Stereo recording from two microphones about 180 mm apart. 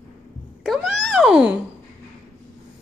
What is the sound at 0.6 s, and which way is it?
Cat, centre (ahead or behind).